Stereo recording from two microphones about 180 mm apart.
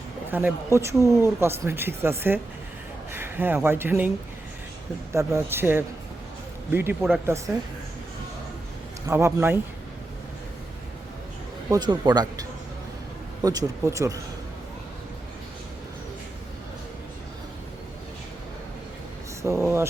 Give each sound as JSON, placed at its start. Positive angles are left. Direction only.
{"t": 0.3, "sound": "speech", "side_deg": -10}
{"t": 5.1, "sound": "speech", "side_deg": -15}
{"t": 9.0, "sound": "speech", "side_deg": -15}
{"t": 11.7, "sound": "speech", "side_deg": -25}
{"t": 19.4, "sound": "a sound", "side_deg": -15}